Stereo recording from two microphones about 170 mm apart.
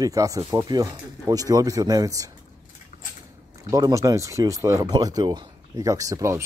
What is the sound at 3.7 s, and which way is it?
Speech, 20° right (ahead or behind).